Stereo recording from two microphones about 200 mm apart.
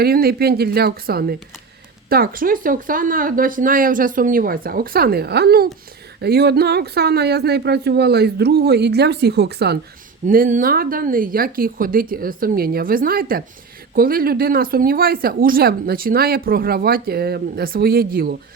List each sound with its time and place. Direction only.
0.0 s speech: 50° right (ahead or behind)
10.2 s speech: 40° right (ahead or behind)